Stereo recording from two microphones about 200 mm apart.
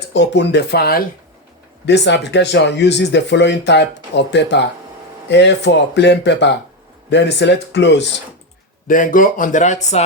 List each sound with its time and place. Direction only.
0.1 s speech: 60° left (ahead or behind)
1.9 s speech: 60° left (ahead or behind)
8.9 s speech: 40° left (ahead or behind)